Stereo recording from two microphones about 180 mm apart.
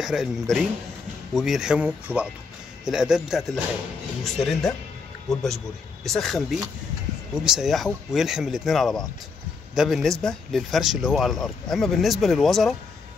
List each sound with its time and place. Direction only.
0.0 s speech: centre (ahead or behind)
6.0 s speech: centre (ahead or behind)